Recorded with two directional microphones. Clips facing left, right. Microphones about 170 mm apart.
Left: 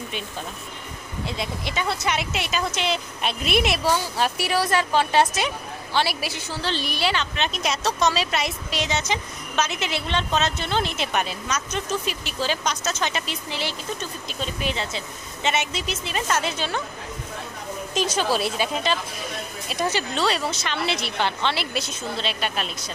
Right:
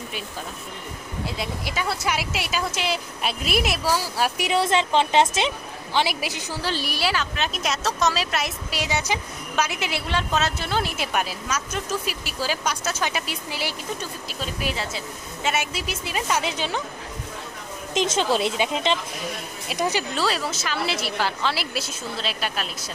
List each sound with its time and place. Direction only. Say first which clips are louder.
1.2 s speech: left 1 dB; 5° right (ahead or behind)
4.4 s a woman's voice: right 3 dB; 20° right (ahead or behind)
17.9 s a woman's voice: right 2 dB; 20° right (ahead or behind)
20.2 s speech: left 1 dB; centre (ahead or behind)